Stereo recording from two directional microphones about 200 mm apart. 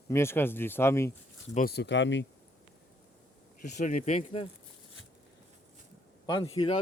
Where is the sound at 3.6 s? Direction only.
40° left (ahead or behind).